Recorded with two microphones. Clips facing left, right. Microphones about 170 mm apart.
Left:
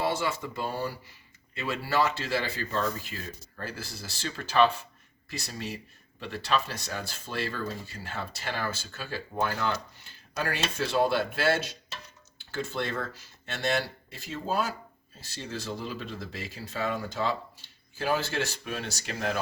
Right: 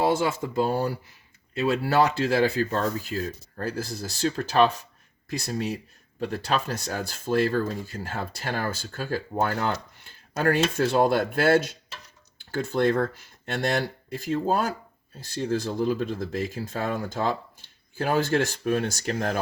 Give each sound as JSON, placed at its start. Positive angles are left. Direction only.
{"t": 0.0, "sound": "speech", "side_deg": -50}